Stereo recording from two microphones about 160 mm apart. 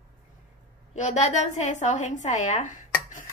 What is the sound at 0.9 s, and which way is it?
A woman's voice, 45° left (ahead or behind).